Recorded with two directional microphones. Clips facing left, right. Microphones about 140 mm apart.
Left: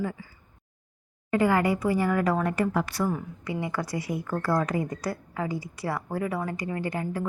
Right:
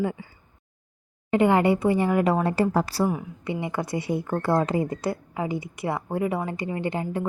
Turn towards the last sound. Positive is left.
turn(degrees=-25)  # may be behind; listen again after turning